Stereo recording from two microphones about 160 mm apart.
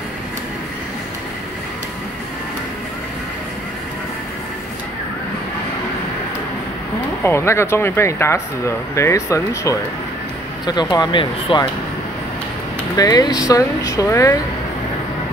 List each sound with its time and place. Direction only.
7.2 s speech: 15° left (ahead or behind)
12.9 s speech: 25° left (ahead or behind)